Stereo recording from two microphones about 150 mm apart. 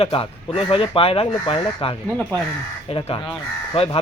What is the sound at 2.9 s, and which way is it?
Speech, 35° left (ahead or behind).